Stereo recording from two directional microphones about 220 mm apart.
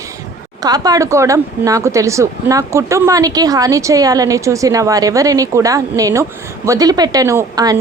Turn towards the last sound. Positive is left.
turn(degrees=-15)  # may be behind; listen again after turning